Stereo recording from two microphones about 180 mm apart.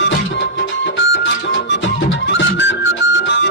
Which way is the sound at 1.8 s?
90° left.